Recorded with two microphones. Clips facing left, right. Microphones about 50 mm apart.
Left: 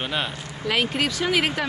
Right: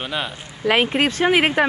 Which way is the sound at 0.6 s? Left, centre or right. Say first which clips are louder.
Right 6 dB; right.